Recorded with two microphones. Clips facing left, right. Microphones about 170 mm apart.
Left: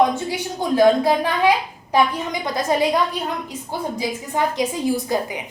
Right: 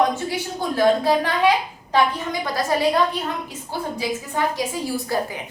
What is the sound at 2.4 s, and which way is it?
Speech, 20° left (ahead or behind).